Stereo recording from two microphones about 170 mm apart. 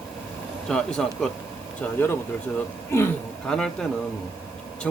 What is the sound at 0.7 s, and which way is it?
Speech, 5° left (ahead or behind).